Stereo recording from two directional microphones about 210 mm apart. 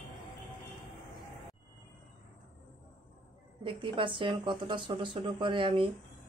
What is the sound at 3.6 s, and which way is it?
Speech, 25° right (ahead or behind).